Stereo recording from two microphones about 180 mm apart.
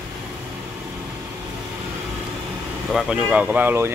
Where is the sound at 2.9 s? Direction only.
5° right (ahead or behind).